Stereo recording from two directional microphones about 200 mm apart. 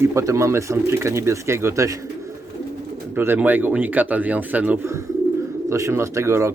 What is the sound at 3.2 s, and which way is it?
Speech, 10° right (ahead or behind).